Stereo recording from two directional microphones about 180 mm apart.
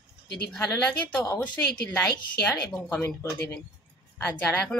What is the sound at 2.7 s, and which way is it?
Speech, centre (ahead or behind).